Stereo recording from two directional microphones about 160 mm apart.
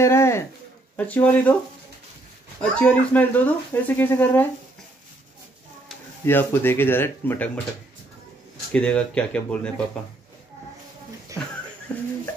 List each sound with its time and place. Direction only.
0.0 s speech: 15° left (ahead or behind)
2.7 s speech: 5° left (ahead or behind)
6.2 s speech: 15° left (ahead or behind)
8.7 s speech: 5° left (ahead or behind)
11.9 s speech: 5° left (ahead or behind)